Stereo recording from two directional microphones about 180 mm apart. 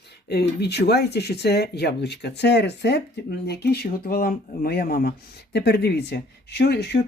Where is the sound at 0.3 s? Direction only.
65° left (ahead or behind).